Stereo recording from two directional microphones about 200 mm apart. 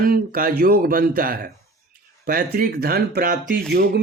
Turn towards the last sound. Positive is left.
turn(degrees=-50)  # may be behind; listen again after turning